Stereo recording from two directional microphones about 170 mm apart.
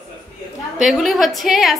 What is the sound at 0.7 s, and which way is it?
A woman's voice, centre (ahead or behind).